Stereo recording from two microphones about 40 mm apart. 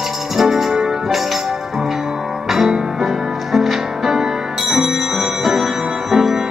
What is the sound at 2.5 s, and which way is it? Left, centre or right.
Music, centre.